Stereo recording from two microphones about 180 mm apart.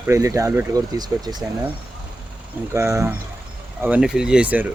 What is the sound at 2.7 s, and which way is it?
Speech, 15° right (ahead or behind).